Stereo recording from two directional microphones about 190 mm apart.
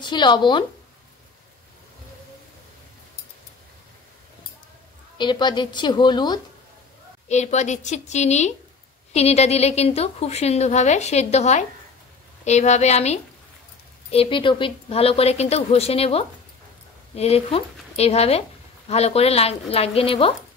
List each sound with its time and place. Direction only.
0.0 s a woman's voice: 25° left (ahead or behind)
5.1 s a woman's voice: 25° left (ahead or behind)
7.2 s a woman's voice: 35° left (ahead or behind)